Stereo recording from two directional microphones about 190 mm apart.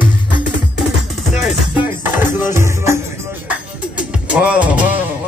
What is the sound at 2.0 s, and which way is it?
Music, 10° right (ahead or behind).